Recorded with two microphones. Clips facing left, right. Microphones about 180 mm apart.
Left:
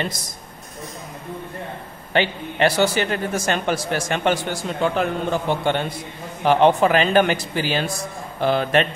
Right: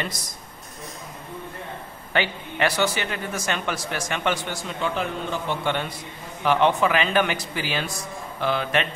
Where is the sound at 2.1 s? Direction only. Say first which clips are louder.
Left 4 dB; 30° left (ahead or behind).